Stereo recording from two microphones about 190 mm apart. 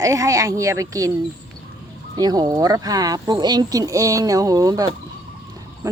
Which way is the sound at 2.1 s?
20° right (ahead or behind).